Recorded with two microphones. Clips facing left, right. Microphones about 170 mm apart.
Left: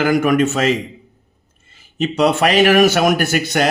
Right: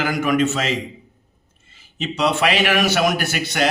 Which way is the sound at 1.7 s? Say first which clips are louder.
Left 7 dB; 45° left (ahead or behind).